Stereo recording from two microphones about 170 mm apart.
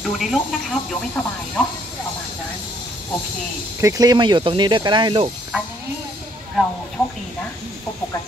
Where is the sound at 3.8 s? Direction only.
20° right (ahead or behind).